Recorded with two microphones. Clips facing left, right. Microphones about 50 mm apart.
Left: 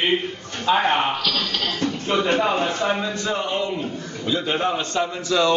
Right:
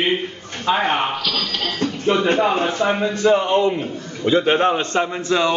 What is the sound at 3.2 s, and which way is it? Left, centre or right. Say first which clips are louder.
A man's voice: right 8 dB; right.